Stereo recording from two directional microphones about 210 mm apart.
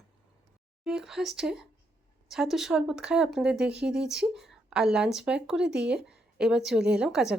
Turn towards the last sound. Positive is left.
turn(degrees=-5)  # may be behind; listen again after turning